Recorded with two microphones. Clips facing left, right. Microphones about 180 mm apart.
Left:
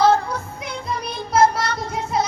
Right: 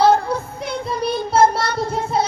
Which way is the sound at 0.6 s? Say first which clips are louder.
Right 5 dB; 30° right (ahead or behind).